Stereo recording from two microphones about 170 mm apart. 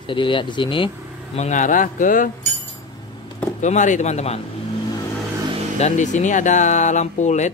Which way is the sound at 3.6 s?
45° left (ahead or behind).